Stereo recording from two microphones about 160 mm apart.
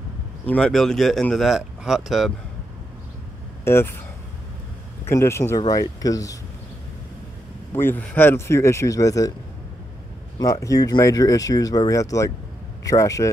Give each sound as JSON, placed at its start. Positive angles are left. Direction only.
{"t": 0.5, "sound": "speech", "side_deg": 5}
{"t": 3.6, "sound": "speech", "side_deg": 15}
{"t": 5.0, "sound": "speech", "side_deg": 15}
{"t": 7.7, "sound": "speech", "side_deg": 15}
{"t": 10.4, "sound": "speech", "side_deg": 20}